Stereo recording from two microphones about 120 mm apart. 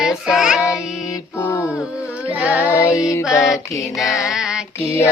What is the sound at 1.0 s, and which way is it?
Music, 25° left (ahead or behind).